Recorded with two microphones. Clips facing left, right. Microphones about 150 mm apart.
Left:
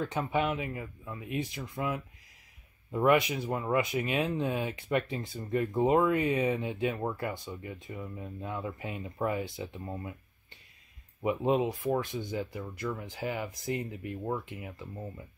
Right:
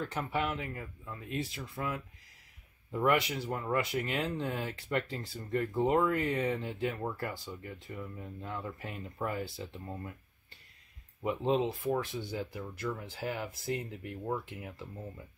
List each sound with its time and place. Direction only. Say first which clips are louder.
0.2 s speech: left 4 dB; 20° left (ahead or behind)
0.7 s speech: left 3 dB; 5° left (ahead or behind)
11.2 s speech: left 2 dB; 15° left (ahead or behind)